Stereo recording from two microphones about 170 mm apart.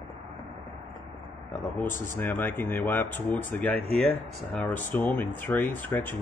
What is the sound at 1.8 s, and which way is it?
Speech, 10° left (ahead or behind).